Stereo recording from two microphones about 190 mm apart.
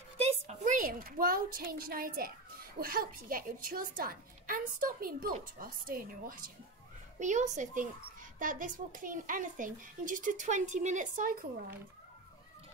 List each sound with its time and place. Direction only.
0.3 s a child's voice: 40° right (ahead or behind)